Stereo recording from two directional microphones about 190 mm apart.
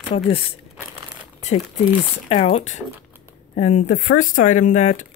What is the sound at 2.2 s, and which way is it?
Speech, 35° left (ahead or behind).